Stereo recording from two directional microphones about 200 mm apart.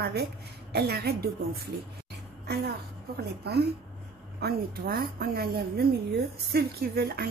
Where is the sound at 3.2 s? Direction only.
55° right (ahead or behind).